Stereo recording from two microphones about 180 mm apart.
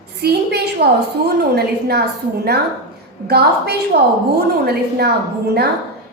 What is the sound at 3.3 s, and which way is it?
A woman's voice, 65° right (ahead or behind).